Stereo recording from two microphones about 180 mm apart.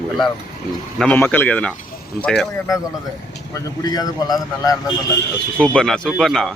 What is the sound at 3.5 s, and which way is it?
Speech, 20° left (ahead or behind).